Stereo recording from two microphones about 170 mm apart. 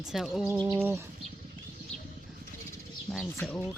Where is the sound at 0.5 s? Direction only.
15° right (ahead or behind).